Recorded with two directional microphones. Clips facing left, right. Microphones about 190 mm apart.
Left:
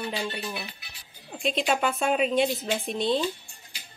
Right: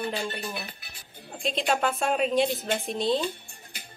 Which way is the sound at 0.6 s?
50° right (ahead or behind).